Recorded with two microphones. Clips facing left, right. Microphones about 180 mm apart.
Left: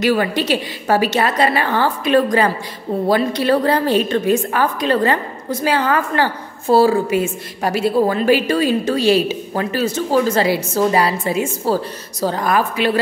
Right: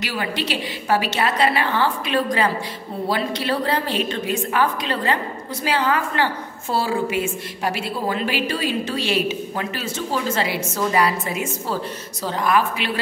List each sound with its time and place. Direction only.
0.0 s a woman's voice: 50° left (ahead or behind)